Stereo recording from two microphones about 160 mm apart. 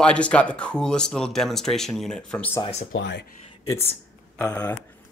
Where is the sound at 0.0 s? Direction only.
5° left (ahead or behind).